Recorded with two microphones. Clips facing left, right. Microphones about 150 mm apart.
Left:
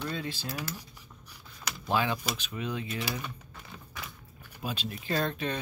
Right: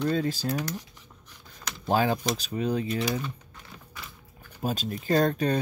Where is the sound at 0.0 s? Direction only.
40° right (ahead or behind).